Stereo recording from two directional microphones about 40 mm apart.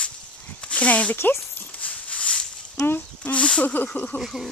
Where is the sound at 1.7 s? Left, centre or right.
Left.